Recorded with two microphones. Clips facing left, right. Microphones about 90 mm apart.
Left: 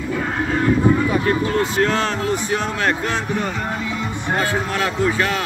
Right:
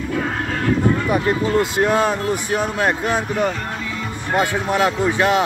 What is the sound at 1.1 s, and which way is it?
A man's voice, 15° right (ahead or behind).